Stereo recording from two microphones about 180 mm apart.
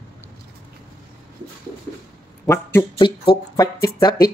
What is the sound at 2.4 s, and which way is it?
Speech, 15° left (ahead or behind).